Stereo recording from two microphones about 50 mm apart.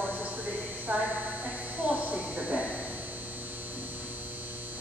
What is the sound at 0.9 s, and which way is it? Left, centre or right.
Speech, right.